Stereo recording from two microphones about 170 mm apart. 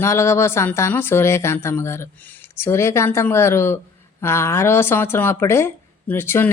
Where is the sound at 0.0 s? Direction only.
15° left (ahead or behind).